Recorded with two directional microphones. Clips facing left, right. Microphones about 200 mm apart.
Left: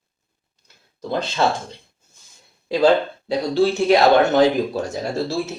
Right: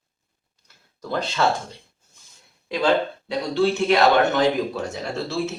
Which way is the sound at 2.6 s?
35° left (ahead or behind).